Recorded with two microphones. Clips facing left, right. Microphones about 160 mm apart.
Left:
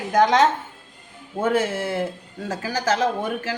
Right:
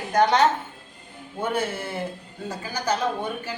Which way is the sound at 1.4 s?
90° left.